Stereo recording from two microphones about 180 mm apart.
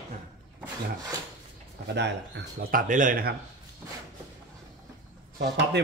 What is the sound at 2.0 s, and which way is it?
Speech, 75° right (ahead or behind).